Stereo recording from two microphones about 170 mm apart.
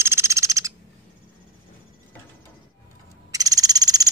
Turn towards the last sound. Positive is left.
turn(degrees=-20)  # may be behind; listen again after turning